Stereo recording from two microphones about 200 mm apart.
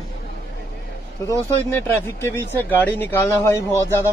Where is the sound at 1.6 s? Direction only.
10° left (ahead or behind).